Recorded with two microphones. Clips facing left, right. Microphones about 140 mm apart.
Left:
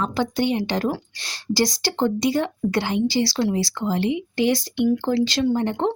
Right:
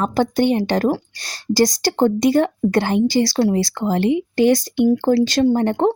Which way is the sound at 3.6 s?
55° right (ahead or behind).